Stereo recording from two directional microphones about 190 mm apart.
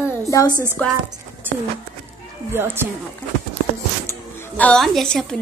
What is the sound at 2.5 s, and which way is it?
Speech, 10° right (ahead or behind).